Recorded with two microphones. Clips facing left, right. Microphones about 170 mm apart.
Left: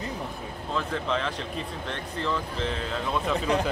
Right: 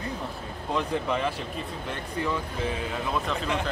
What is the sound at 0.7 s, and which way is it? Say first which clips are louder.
Speech: right 1 dB; 10° right (ahead or behind).